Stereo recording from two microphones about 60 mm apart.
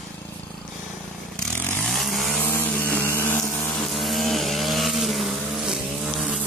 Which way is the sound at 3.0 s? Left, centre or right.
Left.